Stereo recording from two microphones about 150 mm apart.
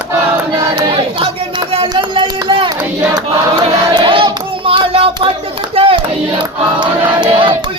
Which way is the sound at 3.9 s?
35° right (ahead or behind).